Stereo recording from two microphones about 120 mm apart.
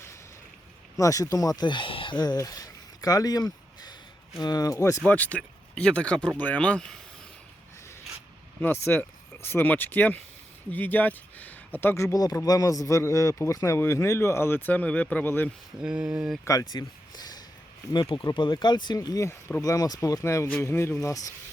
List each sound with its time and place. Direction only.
0.9 s speech: 30° left (ahead or behind)
5.0 s speech: 10° left (ahead or behind)
8.6 s speech: 15° left (ahead or behind)
12.1 s speech: 30° left (ahead or behind)
15.8 s speech: 10° right (ahead or behind)
16.4 s speech: 30° left (ahead or behind)